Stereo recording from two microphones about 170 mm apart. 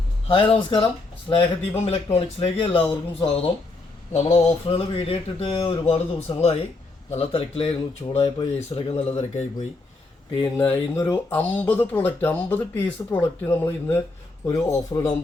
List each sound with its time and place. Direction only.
0.3 s speech: 30° left (ahead or behind)
10.7 s speech: 10° left (ahead or behind)